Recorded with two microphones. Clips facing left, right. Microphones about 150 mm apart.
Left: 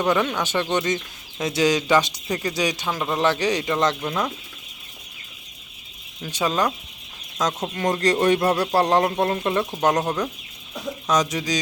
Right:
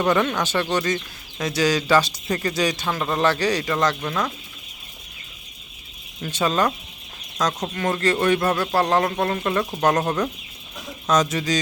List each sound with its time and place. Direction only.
0.0 s speech: 10° left (ahead or behind)
6.2 s speech: 10° left (ahead or behind)
7.7 s speech: 25° left (ahead or behind)